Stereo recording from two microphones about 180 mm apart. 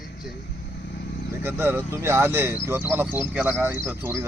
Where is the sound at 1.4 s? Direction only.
10° right (ahead or behind).